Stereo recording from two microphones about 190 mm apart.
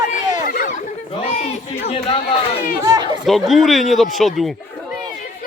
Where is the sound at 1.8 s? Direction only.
35° left (ahead or behind).